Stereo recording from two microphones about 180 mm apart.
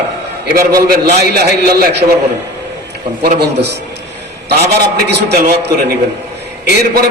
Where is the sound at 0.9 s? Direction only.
60° right (ahead or behind).